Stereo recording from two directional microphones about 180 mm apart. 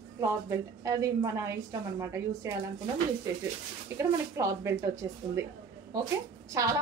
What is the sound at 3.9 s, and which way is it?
A woman's voice, 20° right (ahead or behind).